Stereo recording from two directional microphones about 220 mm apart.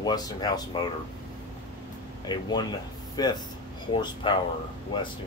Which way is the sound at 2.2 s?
20° left (ahead or behind).